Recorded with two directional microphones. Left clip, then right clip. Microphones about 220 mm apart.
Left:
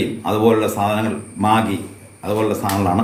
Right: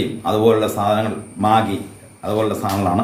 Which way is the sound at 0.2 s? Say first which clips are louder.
Right 1 dB; 10° right (ahead or behind).